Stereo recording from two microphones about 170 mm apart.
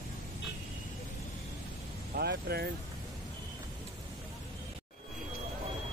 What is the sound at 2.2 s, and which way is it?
Speech, 70° right (ahead or behind).